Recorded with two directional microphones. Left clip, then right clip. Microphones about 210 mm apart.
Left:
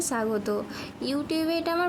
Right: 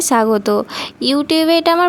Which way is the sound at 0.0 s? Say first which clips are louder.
Right 14 dB; 40° right (ahead or behind).